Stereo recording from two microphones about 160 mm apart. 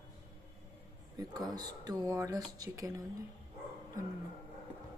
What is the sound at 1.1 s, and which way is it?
Speech, 25° right (ahead or behind).